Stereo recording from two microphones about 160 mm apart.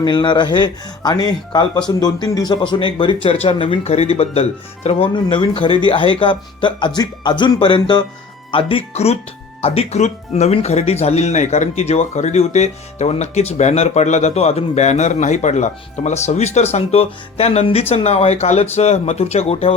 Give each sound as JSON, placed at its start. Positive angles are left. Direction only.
{"t": 0.0, "sound": "speech", "side_deg": 30}